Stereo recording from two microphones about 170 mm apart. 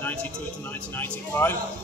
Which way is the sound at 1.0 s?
15° left (ahead or behind).